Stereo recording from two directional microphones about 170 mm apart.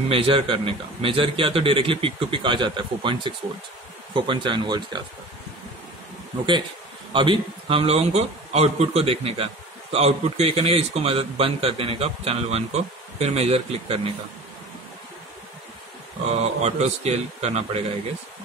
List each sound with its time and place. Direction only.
0.1 s a man's voice: 35° right (ahead or behind)
7.1 s a man's voice: 30° right (ahead or behind)
16.3 s a man's voice: 40° right (ahead or behind)